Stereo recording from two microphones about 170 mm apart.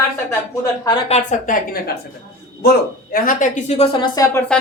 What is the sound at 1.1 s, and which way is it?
Speech, 50° left (ahead or behind).